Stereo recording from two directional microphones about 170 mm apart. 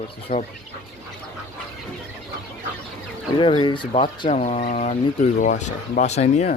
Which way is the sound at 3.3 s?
30° left (ahead or behind).